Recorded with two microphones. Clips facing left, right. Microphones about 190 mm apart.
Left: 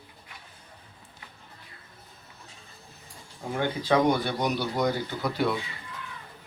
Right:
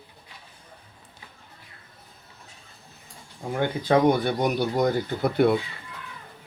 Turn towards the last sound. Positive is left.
turn(degrees=-55)  # may be behind; listen again after turning